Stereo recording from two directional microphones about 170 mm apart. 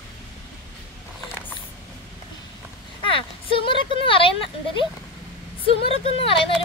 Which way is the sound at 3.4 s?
30° left (ahead or behind).